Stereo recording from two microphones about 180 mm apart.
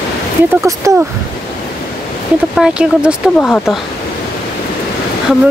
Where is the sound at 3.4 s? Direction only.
10° left (ahead or behind).